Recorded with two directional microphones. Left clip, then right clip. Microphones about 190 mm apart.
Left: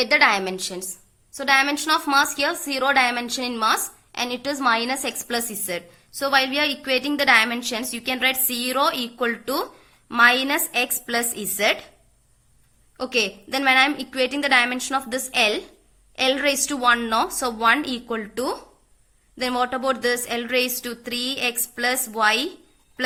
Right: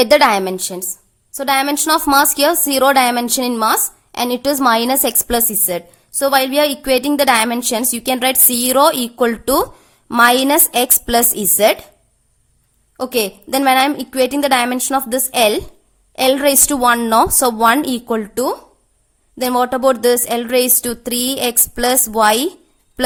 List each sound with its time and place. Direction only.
0.0 s a woman's voice: 70° right (ahead or behind)
13.0 s a woman's voice: 55° right (ahead or behind)